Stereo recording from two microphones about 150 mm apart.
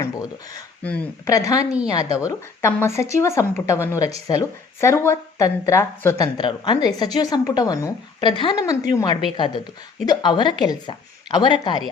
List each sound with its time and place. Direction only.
0.8 s speech: 10° left (ahead or behind)
1.3 s a woman's voice: 20° left (ahead or behind)